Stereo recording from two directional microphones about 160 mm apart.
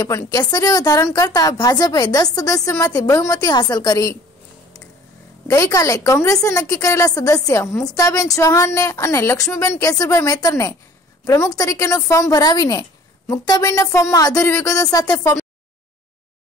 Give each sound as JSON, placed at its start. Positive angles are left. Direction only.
{"t": 0.0, "sound": "a woman's voice", "side_deg": 25}
{"t": 5.5, "sound": "a woman's voice", "side_deg": 20}